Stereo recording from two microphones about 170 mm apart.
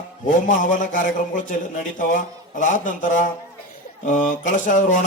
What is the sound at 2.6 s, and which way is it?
Speech, 50° left (ahead or behind).